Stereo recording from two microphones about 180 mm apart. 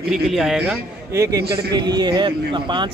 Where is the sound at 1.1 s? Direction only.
15° right (ahead or behind).